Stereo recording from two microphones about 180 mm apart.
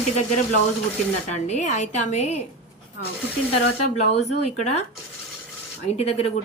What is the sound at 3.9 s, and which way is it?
Speech, 40° left (ahead or behind).